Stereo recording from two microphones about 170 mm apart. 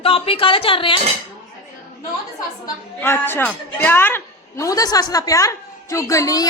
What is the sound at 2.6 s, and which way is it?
A woman's voice, 15° left (ahead or behind).